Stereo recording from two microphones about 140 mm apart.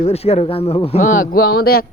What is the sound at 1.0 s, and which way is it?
Speech, 70° left (ahead or behind).